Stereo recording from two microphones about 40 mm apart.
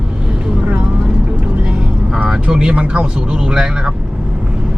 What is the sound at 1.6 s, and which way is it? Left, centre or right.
Vehicle, centre.